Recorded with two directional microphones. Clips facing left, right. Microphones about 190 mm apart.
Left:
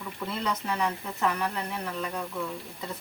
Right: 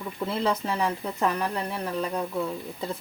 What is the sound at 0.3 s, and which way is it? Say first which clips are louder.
Speech: right 4 dB; 30° right (ahead or behind).